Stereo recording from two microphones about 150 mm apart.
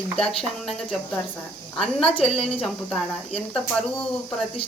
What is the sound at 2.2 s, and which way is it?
Speech, 40° left (ahead or behind).